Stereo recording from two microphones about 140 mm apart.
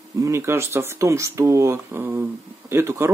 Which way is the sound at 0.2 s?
20° right (ahead or behind).